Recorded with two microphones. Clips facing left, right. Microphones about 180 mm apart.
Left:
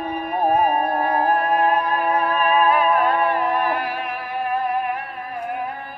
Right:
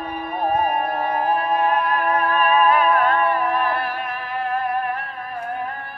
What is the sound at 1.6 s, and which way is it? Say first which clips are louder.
Music: left 1 dB; 40° left (ahead or behind).